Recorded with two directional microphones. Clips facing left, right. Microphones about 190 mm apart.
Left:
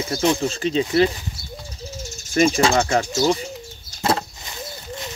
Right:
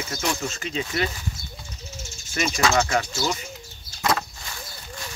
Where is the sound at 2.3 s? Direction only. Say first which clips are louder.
Left 6 dB; 35° left (ahead or behind).